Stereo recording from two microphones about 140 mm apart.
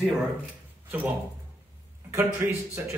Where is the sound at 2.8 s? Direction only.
15° right (ahead or behind).